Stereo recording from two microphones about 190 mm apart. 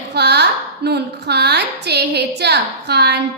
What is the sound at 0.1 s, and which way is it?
A woman's voice, 60° right (ahead or behind).